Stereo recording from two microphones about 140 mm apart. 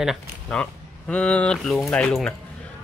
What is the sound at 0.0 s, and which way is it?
Speech, centre (ahead or behind).